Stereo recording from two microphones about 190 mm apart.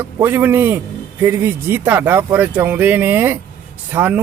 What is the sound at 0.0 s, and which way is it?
Speech, 10° right (ahead or behind).